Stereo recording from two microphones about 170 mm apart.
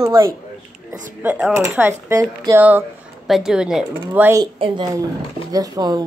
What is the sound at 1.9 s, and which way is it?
A woman's voice, 20° right (ahead or behind).